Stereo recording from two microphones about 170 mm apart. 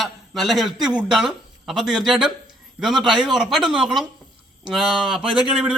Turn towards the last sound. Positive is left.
turn(degrees=-5)  # may be behind; listen again after turning